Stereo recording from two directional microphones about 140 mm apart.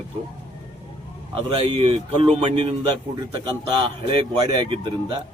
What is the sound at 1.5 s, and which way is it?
A man's voice, 40° right (ahead or behind).